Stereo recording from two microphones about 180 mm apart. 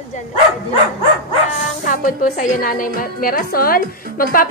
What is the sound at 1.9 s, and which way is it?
A woman's voice, 45° left (ahead or behind).